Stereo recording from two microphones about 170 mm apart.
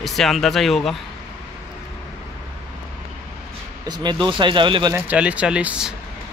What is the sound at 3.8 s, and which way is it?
Speech, 25° right (ahead or behind).